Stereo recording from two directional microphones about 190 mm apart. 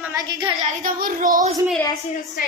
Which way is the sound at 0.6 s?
45° right (ahead or behind).